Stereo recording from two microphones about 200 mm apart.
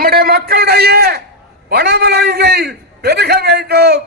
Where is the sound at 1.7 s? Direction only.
55° right (ahead or behind).